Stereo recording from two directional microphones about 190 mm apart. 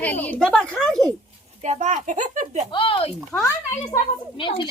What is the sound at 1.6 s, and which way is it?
Speech, 40° right (ahead or behind).